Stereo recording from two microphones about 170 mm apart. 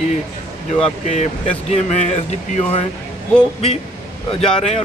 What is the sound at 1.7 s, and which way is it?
Speech, 45° left (ahead or behind).